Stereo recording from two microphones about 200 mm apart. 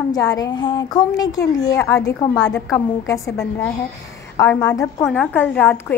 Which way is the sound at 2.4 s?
5° left (ahead or behind).